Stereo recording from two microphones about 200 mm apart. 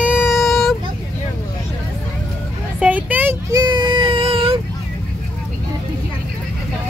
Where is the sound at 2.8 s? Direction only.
10° right (ahead or behind); by 4.6 s 25° right (ahead or behind).